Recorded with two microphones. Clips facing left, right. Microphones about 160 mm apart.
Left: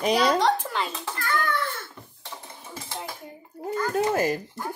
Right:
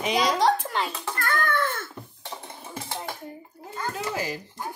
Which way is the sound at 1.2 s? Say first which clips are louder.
Right 1 dB; 50° right (ahead or behind).